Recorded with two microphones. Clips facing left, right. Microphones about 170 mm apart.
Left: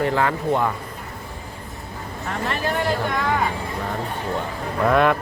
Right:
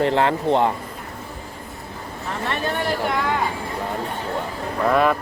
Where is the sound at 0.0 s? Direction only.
25° right (ahead or behind).